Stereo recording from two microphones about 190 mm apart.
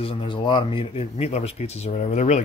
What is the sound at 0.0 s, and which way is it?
Speech, 30° left (ahead or behind).